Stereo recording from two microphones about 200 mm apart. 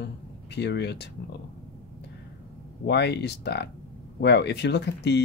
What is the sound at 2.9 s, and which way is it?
Speech, 55° left (ahead or behind).